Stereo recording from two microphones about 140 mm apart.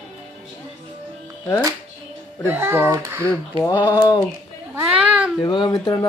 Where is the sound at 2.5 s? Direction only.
15° right (ahead or behind).